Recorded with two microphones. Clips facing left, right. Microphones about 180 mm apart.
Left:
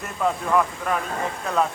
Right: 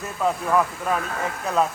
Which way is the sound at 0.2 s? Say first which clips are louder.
Even; 5° right (ahead or behind).